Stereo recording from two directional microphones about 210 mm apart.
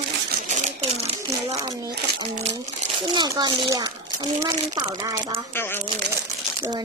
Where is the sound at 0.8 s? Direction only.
30° right (ahead or behind).